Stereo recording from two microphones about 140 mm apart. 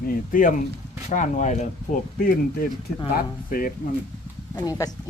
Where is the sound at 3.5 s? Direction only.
90° left.